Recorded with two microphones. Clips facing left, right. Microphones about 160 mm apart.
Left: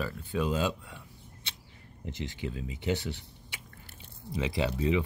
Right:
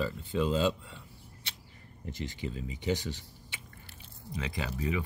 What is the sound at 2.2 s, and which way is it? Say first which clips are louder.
Speech: left 1 dB; 15° left (ahead or behind).